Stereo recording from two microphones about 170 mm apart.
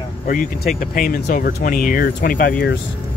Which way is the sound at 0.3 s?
55° left (ahead or behind).